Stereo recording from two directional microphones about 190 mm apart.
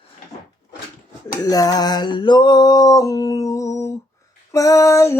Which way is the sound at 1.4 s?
20° left (ahead or behind).